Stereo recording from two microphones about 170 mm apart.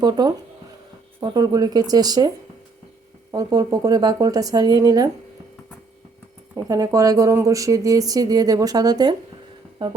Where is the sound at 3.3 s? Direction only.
20° right (ahead or behind).